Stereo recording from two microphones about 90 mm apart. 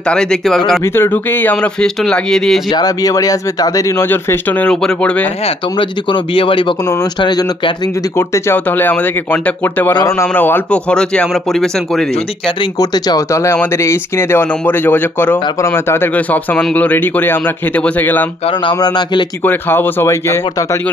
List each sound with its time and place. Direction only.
0.1 s speech: 5° left (ahead or behind)
0.9 s speech: 25° left (ahead or behind); by 2.6 s 5° left (ahead or behind)
2.7 s speech: 45° left (ahead or behind)
4.0 s speech: 25° left (ahead or behind)
4.6 s speech: 10° left (ahead or behind)
5.8 s speech: 65° left (ahead or behind)
7.2 s speech: 55° left (ahead or behind)
8.2 s speech: 25° left (ahead or behind)
10.0 s a man's voice: 30° left (ahead or behind)
10.3 s speech: 20° left (ahead or behind); by 12.1 s 5° left (ahead or behind)
12.7 s speech: 50° left (ahead or behind)
13.3 s a man's voice: 30° left (ahead or behind)
18.7 s speech: 55° left (ahead or behind)
19.4 s speech: 20° left (ahead or behind)